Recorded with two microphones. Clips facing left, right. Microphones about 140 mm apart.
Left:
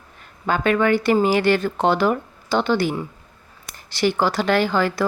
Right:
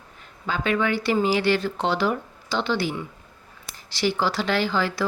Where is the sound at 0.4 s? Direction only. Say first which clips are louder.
Left 5 dB; 55° left (ahead or behind).